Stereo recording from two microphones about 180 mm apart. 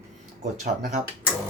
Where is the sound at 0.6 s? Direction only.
45° right (ahead or behind).